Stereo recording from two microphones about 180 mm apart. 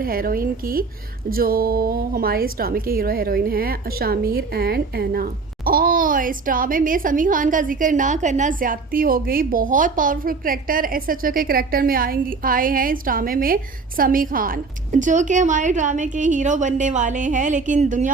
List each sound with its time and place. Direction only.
0.0 s a woman's voice: 55° right (ahead or behind)